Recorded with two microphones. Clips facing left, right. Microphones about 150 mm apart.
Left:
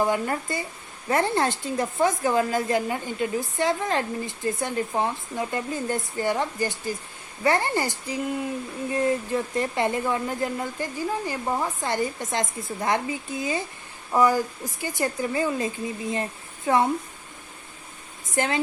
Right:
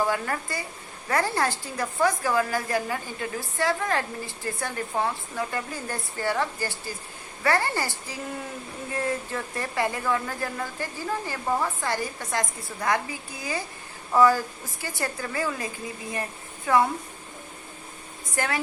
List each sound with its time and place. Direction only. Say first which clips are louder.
0.0 s a woman's voice: left 3 dB; 20° left (ahead or behind)
18.3 s a woman's voice: left 3 dB; 20° left (ahead or behind)